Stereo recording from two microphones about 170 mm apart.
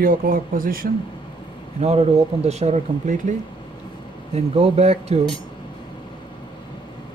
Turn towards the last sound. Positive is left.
turn(degrees=-35)  # may be behind; listen again after turning